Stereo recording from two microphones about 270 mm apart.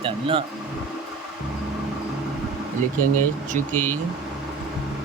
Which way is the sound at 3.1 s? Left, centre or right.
Right.